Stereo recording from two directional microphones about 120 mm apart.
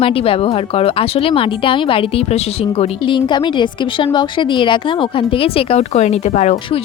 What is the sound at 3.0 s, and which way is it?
Speech, 40° left (ahead or behind).